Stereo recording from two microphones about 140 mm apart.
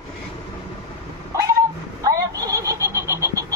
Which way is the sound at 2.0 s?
25° right (ahead or behind).